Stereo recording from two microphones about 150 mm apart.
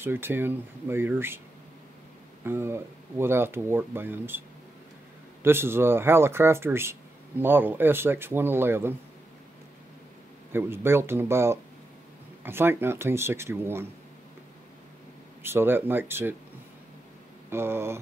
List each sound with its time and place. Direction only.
0.0 s speech: 15° right (ahead or behind)
2.4 s speech: 15° right (ahead or behind)
5.4 s speech: 15° right (ahead or behind)
10.5 s speech: 15° right (ahead or behind)
15.4 s speech: 15° right (ahead or behind)
17.5 s speech: 15° right (ahead or behind)